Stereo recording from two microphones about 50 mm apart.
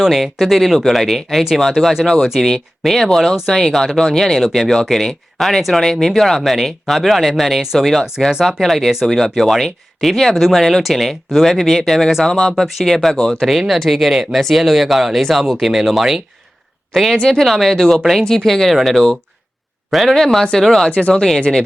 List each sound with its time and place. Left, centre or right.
0.0 s speech: centre
8.3 s speech: centre
16.9 s speech: centre